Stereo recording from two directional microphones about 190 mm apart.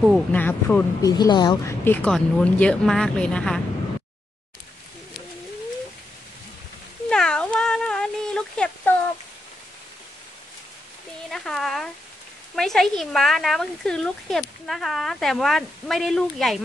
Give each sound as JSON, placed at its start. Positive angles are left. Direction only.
{"t": 0.3, "sound": "speech", "side_deg": 10}
{"t": 1.0, "sound": "a woman's voice", "side_deg": 20}
{"t": 1.9, "sound": "speech", "side_deg": 5}
{"t": 7.1, "sound": "cat", "side_deg": 5}
{"t": 11.2, "sound": "speech", "side_deg": 0}